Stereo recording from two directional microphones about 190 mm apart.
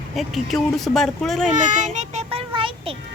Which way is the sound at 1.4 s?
40° right (ahead or behind).